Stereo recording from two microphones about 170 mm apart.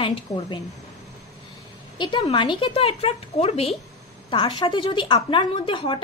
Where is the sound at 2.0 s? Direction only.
25° left (ahead or behind).